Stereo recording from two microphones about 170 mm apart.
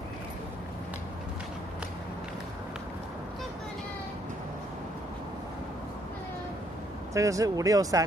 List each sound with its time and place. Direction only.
7.2 s speech: 20° right (ahead or behind)